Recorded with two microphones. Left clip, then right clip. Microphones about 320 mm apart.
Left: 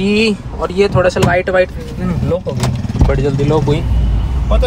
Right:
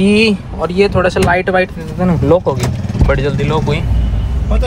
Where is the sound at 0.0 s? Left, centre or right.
Centre.